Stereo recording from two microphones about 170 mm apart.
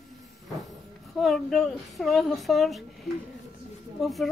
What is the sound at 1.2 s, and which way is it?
A child's voice, centre (ahead or behind).